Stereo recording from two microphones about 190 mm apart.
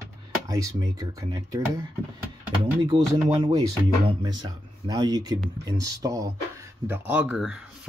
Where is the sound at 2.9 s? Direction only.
25° right (ahead or behind).